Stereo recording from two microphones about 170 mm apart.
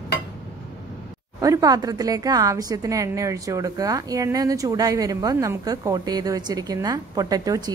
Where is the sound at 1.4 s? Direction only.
20° right (ahead or behind).